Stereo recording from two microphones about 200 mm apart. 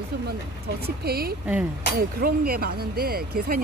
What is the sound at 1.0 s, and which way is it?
Speech, 50° right (ahead or behind).